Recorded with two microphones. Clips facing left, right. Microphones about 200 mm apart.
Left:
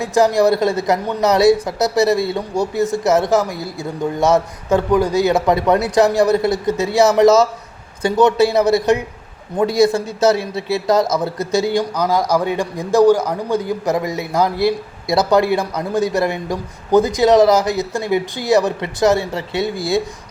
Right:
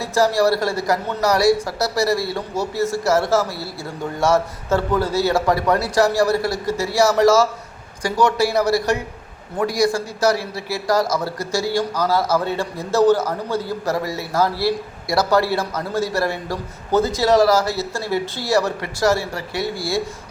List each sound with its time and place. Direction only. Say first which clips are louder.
0.0 s a man's voice: left 3 dB; 20° left (ahead or behind)